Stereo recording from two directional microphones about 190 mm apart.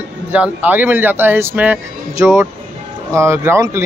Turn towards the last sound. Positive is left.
turn(degrees=-15)  # may be behind; listen again after turning